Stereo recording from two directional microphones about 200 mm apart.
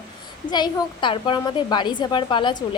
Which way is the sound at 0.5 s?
20° left (ahead or behind).